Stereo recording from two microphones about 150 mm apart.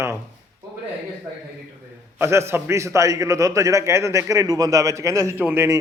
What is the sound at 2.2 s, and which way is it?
A man's voice, 15° right (ahead or behind).